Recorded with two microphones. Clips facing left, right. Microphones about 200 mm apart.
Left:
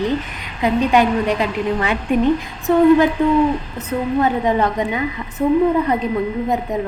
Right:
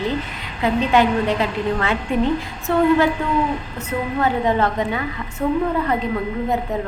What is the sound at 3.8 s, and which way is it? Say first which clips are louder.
A woman's voice: left 3 dB; 20° left (ahead or behind).